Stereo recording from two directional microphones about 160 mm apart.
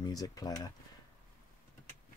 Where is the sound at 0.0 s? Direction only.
25° left (ahead or behind).